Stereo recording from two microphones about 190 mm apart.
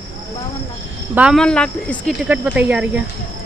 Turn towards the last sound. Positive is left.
turn(degrees=-5)  # may be behind; listen again after turning